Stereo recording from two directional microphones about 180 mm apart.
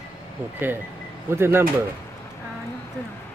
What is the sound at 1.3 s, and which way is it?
Speech, 15° right (ahead or behind).